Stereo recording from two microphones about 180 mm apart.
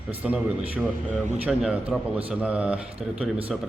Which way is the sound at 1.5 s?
5° right (ahead or behind).